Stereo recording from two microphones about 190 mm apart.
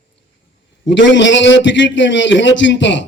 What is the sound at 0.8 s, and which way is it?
A man's voice, 70° left (ahead or behind).